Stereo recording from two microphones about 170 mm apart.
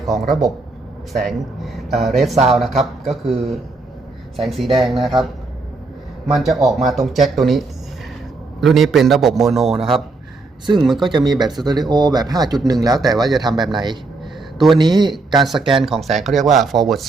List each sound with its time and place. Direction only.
0.1 s a man's voice: centre (ahead or behind)
6.2 s a man's voice: centre (ahead or behind)
8.6 s a man's voice: centre (ahead or behind)
11.2 s speech: 25° right (ahead or behind)
13.5 s a man's voice: centre (ahead or behind)
14.8 s speech: 25° right (ahead or behind)
15.1 s a man's voice: centre (ahead or behind)